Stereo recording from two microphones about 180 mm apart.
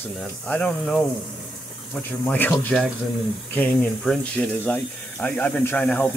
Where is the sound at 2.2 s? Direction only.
10° left (ahead or behind).